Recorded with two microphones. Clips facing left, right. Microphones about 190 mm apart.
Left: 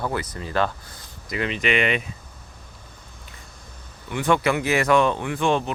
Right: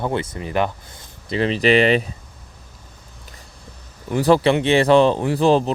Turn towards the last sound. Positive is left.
turn(degrees=-35)  # may be behind; listen again after turning